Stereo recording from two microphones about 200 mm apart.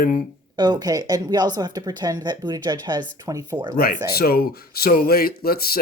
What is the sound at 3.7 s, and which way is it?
Speech, 50° left (ahead or behind).